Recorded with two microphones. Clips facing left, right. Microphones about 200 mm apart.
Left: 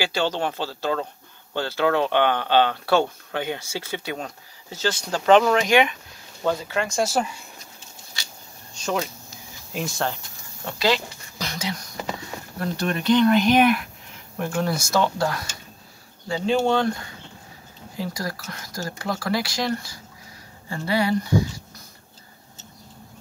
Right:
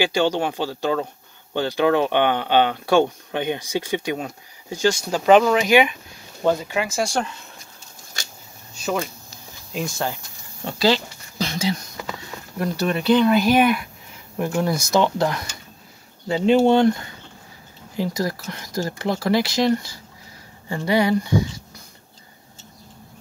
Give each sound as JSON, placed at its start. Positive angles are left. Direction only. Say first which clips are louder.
{"t": 0.0, "sound": "speech", "louder": "right 4 dB", "side_deg": -15}
{"t": 8.7, "sound": "a sound", "louder": "right 1 dB", "side_deg": -5}
{"t": 9.7, "sound": "speech", "louder": "right 1 dB", "side_deg": 0}
{"t": 10.6, "sound": "speech", "louder": "right 3 dB", "side_deg": -30}
{"t": 12.5, "sound": "speech", "louder": "right 3 dB", "side_deg": -5}
{"t": 14.4, "sound": "speech", "louder": "right 3 dB", "side_deg": -15}
{"t": 18.1, "sound": "speech", "louder": "right 6 dB", "side_deg": -20}